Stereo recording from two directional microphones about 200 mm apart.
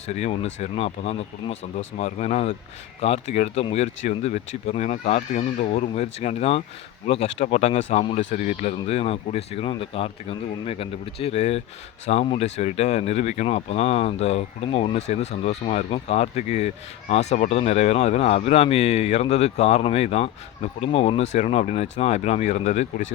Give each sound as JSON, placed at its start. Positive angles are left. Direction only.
{"t": 0.1, "sound": "speech", "side_deg": 35}